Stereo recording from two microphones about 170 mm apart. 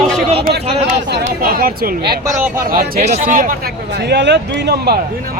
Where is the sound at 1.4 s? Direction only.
60° right (ahead or behind).